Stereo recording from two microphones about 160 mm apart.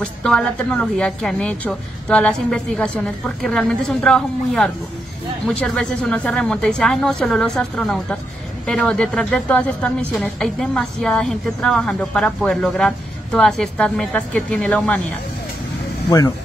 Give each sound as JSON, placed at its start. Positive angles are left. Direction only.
{"t": 0.0, "sound": "a woman's voice", "side_deg": 5}
{"t": 16.1, "sound": "speech", "side_deg": 20}